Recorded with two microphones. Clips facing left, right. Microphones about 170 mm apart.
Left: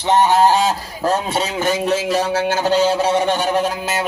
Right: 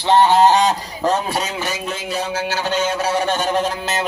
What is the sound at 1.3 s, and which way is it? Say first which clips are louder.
Speech: left 2 dB; 30° left (ahead or behind).